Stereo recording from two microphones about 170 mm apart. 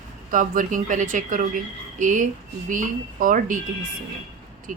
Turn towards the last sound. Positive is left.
turn(degrees=-50)  # may be behind; listen again after turning